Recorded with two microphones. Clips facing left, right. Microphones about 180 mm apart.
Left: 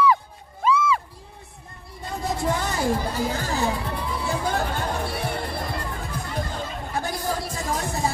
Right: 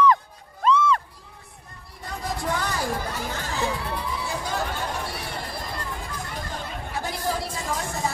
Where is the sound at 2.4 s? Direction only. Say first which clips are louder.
Left 3 dB; 25° left (ahead or behind).